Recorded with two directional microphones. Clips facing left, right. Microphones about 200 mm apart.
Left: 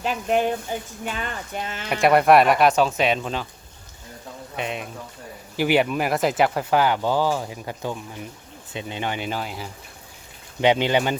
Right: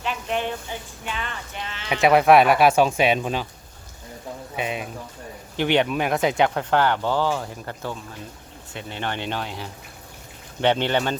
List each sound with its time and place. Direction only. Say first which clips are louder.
0.0 s speech: left 5 dB; 40° left (ahead or behind)
1.9 s speech: even; centre (ahead or behind)
4.5 s speech: right 1 dB; 5° right (ahead or behind)